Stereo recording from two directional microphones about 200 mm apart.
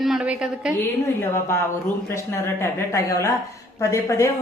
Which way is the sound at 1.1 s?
10° left (ahead or behind).